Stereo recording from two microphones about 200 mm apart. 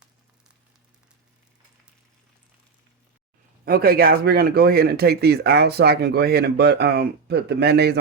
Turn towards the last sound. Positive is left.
turn(degrees=-55)  # may be behind; listen again after turning